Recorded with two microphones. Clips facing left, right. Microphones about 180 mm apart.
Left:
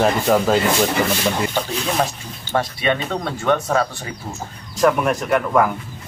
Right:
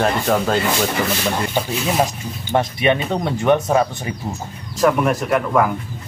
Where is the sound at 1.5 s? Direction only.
10° right (ahead or behind).